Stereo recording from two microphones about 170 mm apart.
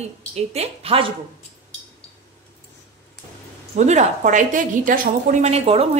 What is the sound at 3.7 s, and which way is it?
A woman's voice, 40° right (ahead or behind).